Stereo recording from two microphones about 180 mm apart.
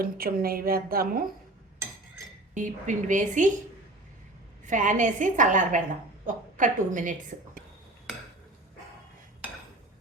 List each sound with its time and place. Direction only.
0.0 s a woman's voice: 55° right (ahead or behind)
2.6 s a woman's voice: 45° right (ahead or behind)
4.6 s a woman's voice: 45° right (ahead or behind)